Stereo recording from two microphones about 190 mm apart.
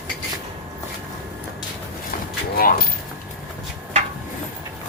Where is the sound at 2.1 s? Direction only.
45° left (ahead or behind).